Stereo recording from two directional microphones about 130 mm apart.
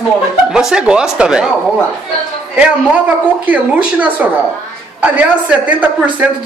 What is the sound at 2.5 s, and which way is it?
A woman's voice, 10° right (ahead or behind).